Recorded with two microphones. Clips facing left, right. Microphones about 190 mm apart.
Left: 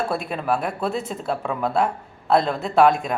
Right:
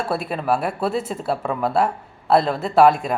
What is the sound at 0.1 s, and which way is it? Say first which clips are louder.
A woman's voice: right 2 dB; 5° right (ahead or behind).